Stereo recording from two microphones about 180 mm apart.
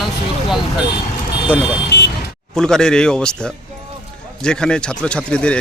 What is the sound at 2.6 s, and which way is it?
Speech, 5° left (ahead or behind).